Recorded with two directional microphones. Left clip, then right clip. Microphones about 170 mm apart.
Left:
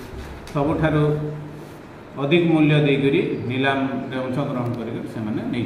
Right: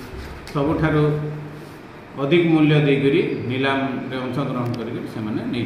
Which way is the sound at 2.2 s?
10° left (ahead or behind).